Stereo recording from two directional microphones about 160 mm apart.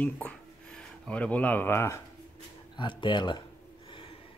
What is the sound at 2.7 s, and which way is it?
Speech, 30° left (ahead or behind).